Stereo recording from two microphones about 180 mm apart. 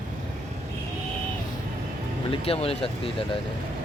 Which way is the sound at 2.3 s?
30° left (ahead or behind).